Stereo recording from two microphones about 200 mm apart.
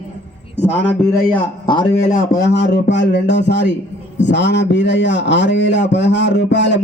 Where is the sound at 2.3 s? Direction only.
60° left (ahead or behind).